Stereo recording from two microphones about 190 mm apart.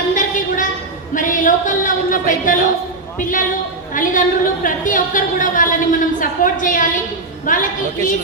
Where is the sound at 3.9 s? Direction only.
45° left (ahead or behind).